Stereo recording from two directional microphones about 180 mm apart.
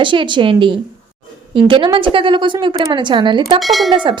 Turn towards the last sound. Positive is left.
turn(degrees=-25)  # may be behind; listen again after turning